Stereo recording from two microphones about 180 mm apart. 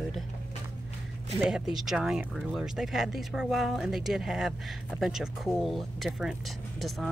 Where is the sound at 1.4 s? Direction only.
5° right (ahead or behind).